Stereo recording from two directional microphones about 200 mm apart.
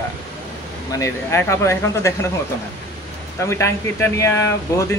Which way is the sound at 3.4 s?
15° left (ahead or behind).